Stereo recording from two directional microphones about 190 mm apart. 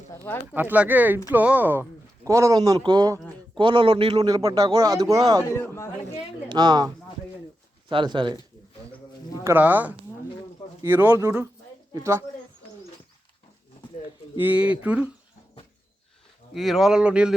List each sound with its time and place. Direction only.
0.5 s a man's voice: 10° right (ahead or behind)
5.5 s a man's voice: 15° left (ahead or behind)
6.5 s a man's voice: 20° right (ahead or behind)
9.4 s speech: 10° right (ahead or behind)
14.3 s speech: 10° right (ahead or behind)
16.6 s speech: centre (ahead or behind)